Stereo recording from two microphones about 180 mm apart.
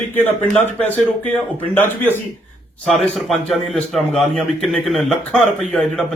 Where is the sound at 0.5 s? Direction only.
10° left (ahead or behind).